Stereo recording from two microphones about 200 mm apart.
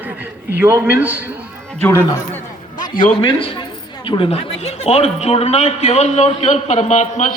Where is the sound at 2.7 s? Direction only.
45° left (ahead or behind).